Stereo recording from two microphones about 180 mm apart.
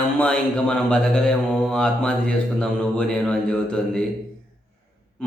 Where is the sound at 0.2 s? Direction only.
5° left (ahead or behind).